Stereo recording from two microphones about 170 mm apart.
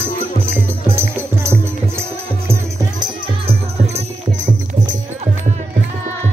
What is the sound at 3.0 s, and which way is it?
Music, 40° right (ahead or behind).